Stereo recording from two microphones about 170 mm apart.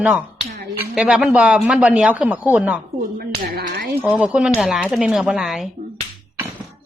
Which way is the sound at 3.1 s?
60° right (ahead or behind).